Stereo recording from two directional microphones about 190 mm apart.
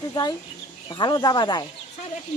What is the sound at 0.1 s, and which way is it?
Speech, 20° left (ahead or behind).